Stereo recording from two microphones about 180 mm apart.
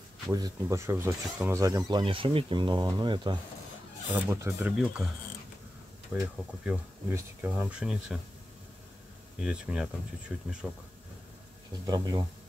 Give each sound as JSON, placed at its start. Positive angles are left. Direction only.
{"t": 0.3, "sound": "speech", "side_deg": -20}
{"t": 4.1, "sound": "speech", "side_deg": -10}
{"t": 6.1, "sound": "speech", "side_deg": -5}
{"t": 9.4, "sound": "speech", "side_deg": -5}
{"t": 11.8, "sound": "speech", "side_deg": -25}